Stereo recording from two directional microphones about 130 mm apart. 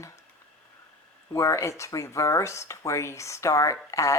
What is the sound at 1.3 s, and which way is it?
Speech, 25° left (ahead or behind).